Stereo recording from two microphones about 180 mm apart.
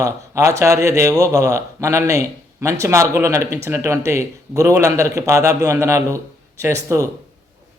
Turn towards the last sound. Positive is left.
turn(degrees=-15)  # may be behind; listen again after turning